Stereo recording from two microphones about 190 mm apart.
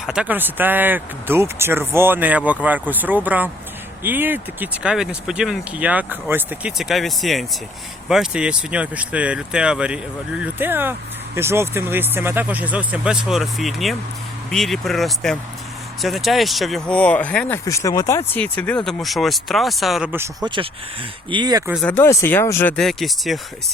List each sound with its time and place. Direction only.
0.0 s speech: 5° right (ahead or behind)
17.7 s speech: 15° left (ahead or behind); by 20.1 s centre (ahead or behind)
20.1 s speech: 15° right (ahead or behind)
21.8 s speech: 10° left (ahead or behind)